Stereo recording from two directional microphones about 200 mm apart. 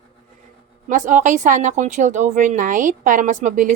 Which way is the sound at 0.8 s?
40° right (ahead or behind).